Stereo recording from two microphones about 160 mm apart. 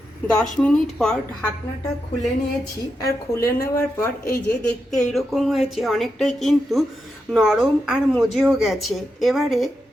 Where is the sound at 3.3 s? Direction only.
20° left (ahead or behind).